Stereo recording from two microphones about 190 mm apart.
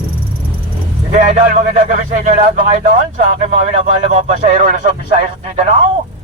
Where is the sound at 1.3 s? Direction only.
45° right (ahead or behind).